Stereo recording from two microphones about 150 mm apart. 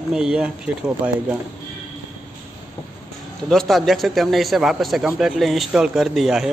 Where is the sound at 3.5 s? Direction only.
Centre (ahead or behind).